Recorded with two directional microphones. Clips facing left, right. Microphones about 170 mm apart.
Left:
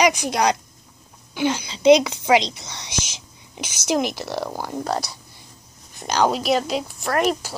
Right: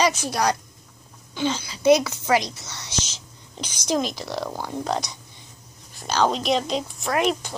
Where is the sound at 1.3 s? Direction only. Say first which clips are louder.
Left 3 dB; 10° left (ahead or behind).